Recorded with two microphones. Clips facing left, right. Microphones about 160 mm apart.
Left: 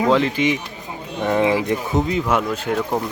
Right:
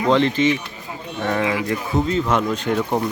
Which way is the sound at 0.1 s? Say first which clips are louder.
Right 5 dB; 5° left (ahead or behind).